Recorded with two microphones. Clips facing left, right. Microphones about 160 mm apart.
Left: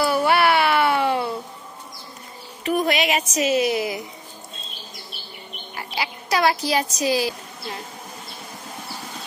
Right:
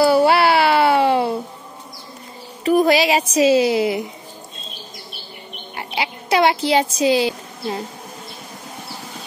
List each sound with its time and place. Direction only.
0.0 s a sound: 30° right (ahead or behind)
2.6 s a woman's voice: 35° right (ahead or behind)
5.8 s speech: 25° right (ahead or behind)